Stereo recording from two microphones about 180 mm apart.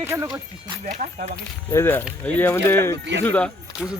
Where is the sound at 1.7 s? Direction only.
15° left (ahead or behind).